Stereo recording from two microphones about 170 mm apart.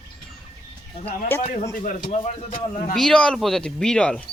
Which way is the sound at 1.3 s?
15° left (ahead or behind).